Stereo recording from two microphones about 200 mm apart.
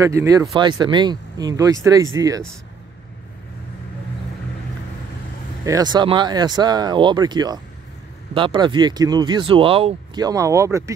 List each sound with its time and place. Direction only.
0.0 s speech: 15° right (ahead or behind)
5.7 s speech: 20° right (ahead or behind)